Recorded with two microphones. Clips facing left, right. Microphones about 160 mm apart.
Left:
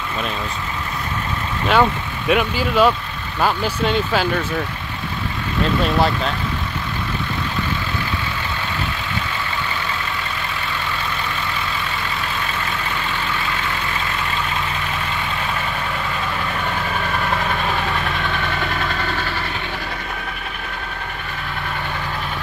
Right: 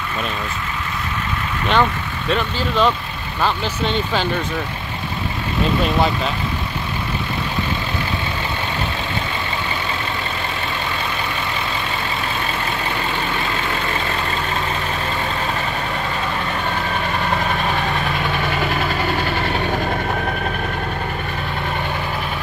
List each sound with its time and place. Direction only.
1.7 s speech: 10° left (ahead or behind)
5.9 s speech: centre (ahead or behind)
18.6 s vehicle: 10° right (ahead or behind)
19.6 s vehicle: 50° right (ahead or behind)